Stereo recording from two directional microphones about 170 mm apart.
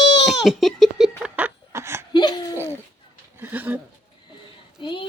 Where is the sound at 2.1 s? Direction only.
25° left (ahead or behind).